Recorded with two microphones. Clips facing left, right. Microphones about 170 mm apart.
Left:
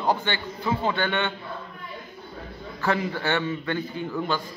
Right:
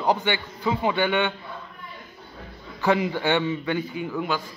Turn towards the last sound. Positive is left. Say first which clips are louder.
# even
turn(degrees=-10)  # may be behind; listen again after turning